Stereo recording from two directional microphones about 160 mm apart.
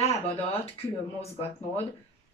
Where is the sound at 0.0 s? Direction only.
40° left (ahead or behind).